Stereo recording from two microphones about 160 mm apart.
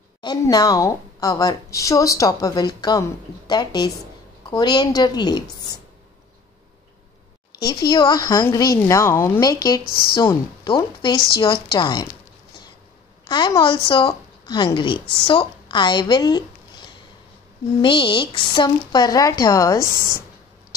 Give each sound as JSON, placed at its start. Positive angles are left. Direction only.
{"t": 0.2, "sound": "a woman's voice", "side_deg": 25}
{"t": 7.9, "sound": "a woman's voice", "side_deg": 30}
{"t": 9.8, "sound": "speech", "side_deg": 70}
{"t": 10.1, "sound": "a woman's voice", "side_deg": 35}
{"t": 13.3, "sound": "a woman's voice", "side_deg": 30}
{"t": 17.8, "sound": "a woman's voice", "side_deg": 30}